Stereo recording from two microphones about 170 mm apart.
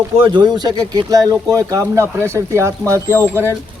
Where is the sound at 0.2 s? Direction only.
30° right (ahead or behind).